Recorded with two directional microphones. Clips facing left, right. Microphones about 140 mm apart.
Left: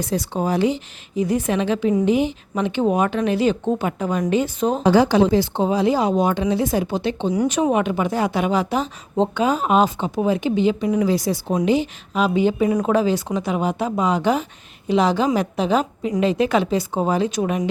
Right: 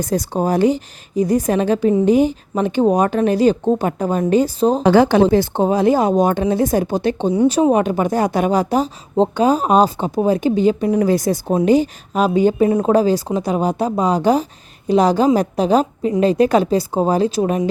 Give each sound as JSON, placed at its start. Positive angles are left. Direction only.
{"t": 0.0, "sound": "a woman's voice", "side_deg": -45}
{"t": 4.8, "sound": "a woman's voice", "side_deg": -60}
{"t": 7.3, "sound": "a woman's voice", "side_deg": -30}